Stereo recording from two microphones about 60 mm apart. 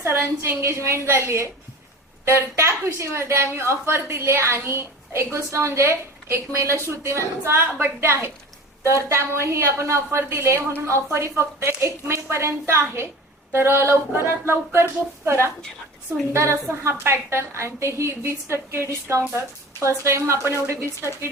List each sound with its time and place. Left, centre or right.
0.0 s a woman's voice: right